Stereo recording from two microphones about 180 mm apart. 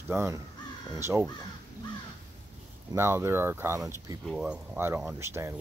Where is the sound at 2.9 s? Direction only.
15° right (ahead or behind).